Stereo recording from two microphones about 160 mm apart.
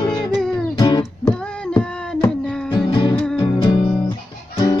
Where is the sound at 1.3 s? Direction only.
5° left (ahead or behind).